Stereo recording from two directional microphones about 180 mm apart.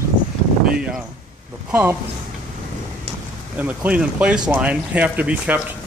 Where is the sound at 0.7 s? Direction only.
5° right (ahead or behind).